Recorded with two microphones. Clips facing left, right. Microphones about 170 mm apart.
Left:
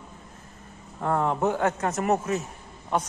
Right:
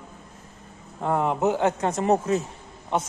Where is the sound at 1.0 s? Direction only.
15° right (ahead or behind).